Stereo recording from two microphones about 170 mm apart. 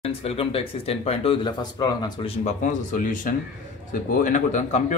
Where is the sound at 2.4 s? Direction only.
50° left (ahead or behind).